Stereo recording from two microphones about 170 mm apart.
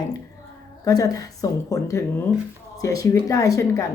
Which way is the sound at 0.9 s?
20° left (ahead or behind).